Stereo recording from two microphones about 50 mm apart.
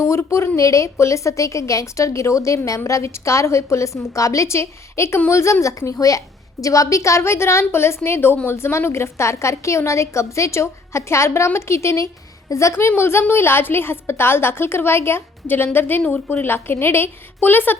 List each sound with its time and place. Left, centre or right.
0.0 s a sound: left
0.5 s a woman's voice: left
12.5 s a woman's voice: left
13.0 s a woman's voice: left
16.0 s a woman's voice: left
16.5 s a woman's voice: left